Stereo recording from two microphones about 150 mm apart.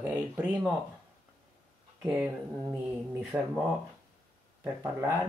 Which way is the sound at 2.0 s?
10° right (ahead or behind).